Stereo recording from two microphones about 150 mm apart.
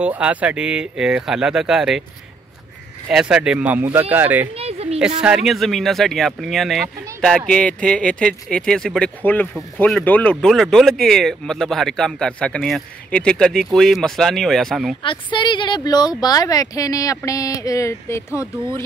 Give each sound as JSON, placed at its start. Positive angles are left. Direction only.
{"t": 0.0, "sound": "speech", "side_deg": -10}
{"t": 3.1, "sound": "speech", "side_deg": -5}
{"t": 4.6, "sound": "a sound", "side_deg": -45}
{"t": 5.2, "sound": "speech", "side_deg": -5}
{"t": 15.3, "sound": "speech", "side_deg": 30}